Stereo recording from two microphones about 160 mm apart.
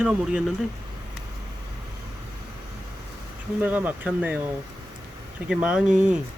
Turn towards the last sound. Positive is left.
turn(degrees=-5)  # may be behind; listen again after turning